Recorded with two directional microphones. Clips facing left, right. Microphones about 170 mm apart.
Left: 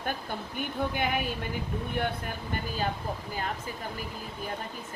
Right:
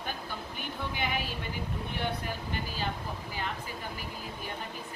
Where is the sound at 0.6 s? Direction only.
50° left (ahead or behind).